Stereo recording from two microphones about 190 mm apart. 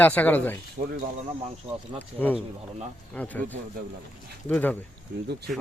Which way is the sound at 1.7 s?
30° right (ahead or behind).